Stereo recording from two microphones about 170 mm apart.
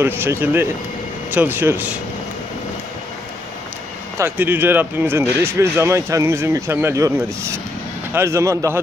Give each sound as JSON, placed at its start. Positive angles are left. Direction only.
{"t": 0.0, "sound": "speech", "side_deg": -15}
{"t": 4.2, "sound": "speech", "side_deg": -10}